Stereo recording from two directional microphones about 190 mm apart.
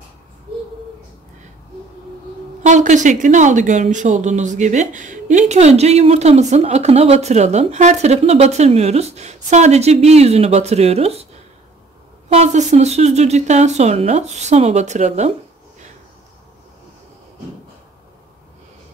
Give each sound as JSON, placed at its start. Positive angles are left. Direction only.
{"t": 2.6, "sound": "speech", "side_deg": -40}
{"t": 12.3, "sound": "speech", "side_deg": -35}